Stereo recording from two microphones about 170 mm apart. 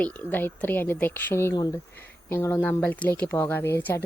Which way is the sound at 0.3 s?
10° left (ahead or behind).